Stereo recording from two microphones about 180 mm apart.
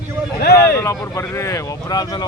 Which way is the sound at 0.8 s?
15° left (ahead or behind).